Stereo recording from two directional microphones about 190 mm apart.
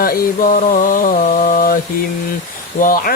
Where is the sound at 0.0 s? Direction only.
45° left (ahead or behind).